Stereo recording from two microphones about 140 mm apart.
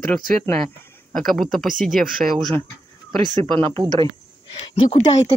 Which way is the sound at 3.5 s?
40° right (ahead or behind).